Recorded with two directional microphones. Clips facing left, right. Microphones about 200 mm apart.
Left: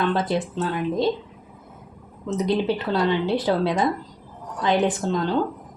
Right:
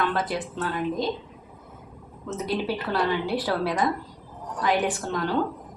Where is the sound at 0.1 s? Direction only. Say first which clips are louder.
Left 5 dB; 25° left (ahead or behind).